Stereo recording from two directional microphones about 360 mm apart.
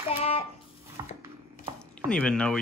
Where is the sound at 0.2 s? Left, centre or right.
Centre.